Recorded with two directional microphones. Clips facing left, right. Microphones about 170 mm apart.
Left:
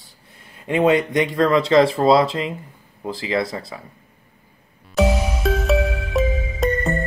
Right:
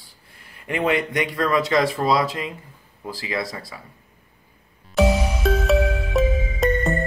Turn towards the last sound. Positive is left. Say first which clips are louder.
# even
turn(degrees=0)  # may be behind; listen again after turning